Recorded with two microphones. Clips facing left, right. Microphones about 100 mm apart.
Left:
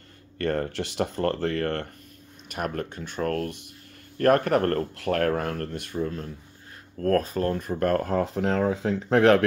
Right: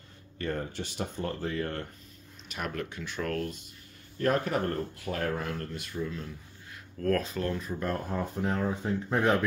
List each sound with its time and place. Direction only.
0.4 s speech: 65° left (ahead or behind)
2.4 s speech: 50° left (ahead or behind)
4.2 s speech: 60° left (ahead or behind)
5.9 s speech: 40° left (ahead or behind)
7.8 s speech: 75° left (ahead or behind)